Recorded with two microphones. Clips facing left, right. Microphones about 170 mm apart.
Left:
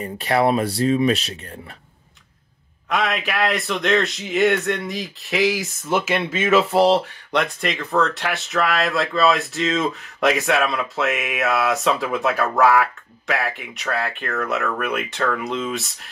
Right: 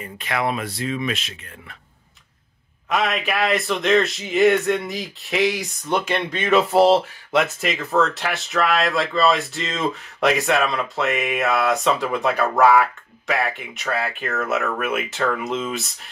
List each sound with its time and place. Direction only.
0.0 s speech: 35° left (ahead or behind)
2.9 s speech: centre (ahead or behind)